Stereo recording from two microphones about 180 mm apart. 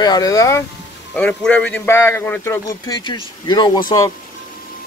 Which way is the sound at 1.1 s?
5° left (ahead or behind).